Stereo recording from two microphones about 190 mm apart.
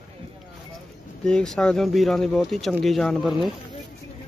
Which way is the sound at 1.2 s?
5° left (ahead or behind).